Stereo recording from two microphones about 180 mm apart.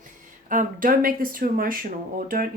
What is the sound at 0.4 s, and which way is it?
Speech, 45° right (ahead or behind).